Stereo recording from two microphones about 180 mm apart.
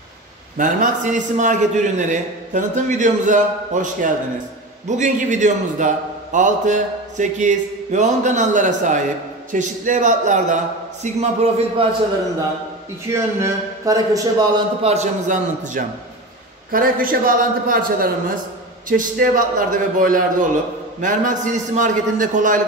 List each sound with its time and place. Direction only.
0.6 s a man's voice: 45° right (ahead or behind)
13.1 s a man's voice: 15° right (ahead or behind)
14.8 s a man's voice: 40° right (ahead or behind)